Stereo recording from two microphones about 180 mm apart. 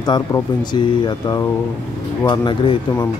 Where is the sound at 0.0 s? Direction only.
25° left (ahead or behind).